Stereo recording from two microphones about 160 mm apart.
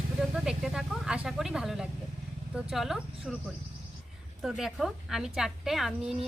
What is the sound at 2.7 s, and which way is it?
Speech, centre (ahead or behind).